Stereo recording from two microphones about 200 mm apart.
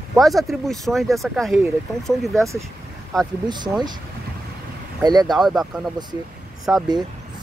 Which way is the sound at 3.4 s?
20° right (ahead or behind).